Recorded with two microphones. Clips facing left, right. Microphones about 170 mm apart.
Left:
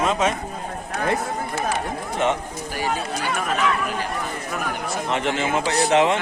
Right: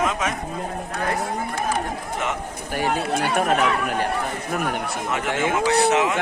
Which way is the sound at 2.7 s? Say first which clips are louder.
Right 3 dB; 55° right (ahead or behind).